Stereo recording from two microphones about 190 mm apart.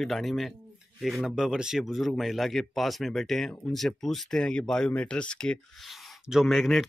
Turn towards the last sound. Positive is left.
turn(degrees=0)  # may be behind; listen again after turning